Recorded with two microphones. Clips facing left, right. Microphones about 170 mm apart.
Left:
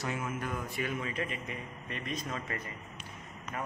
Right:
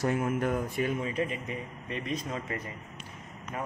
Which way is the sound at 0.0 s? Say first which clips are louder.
Right 8 dB; 50° right (ahead or behind).